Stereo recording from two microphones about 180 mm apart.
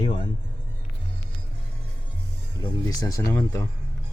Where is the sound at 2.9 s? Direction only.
20° left (ahead or behind).